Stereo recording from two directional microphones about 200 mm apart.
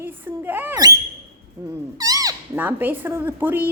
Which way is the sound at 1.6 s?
15° right (ahead or behind).